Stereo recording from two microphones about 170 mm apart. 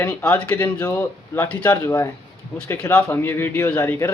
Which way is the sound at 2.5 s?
5° left (ahead or behind).